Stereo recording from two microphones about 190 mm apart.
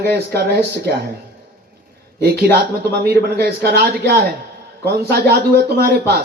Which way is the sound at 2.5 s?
55° right (ahead or behind).